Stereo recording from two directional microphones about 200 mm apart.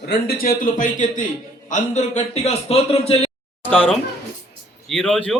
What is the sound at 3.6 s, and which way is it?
Speech, 10° left (ahead or behind).